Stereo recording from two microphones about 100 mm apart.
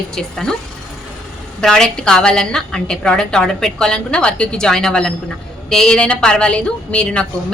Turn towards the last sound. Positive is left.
turn(degrees=10)  # may be behind; listen again after turning